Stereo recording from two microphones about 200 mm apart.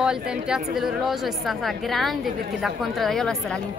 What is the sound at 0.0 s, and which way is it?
A woman's voice, 5° right (ahead or behind).